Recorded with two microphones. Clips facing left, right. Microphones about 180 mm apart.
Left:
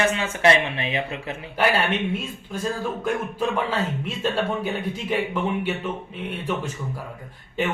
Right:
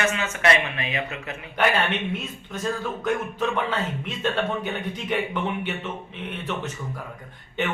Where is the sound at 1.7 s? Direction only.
10° left (ahead or behind).